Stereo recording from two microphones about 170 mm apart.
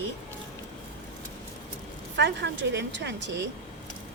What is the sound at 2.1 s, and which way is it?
A woman's voice, 90° right.